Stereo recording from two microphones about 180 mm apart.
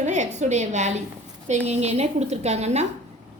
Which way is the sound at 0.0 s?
40° right (ahead or behind).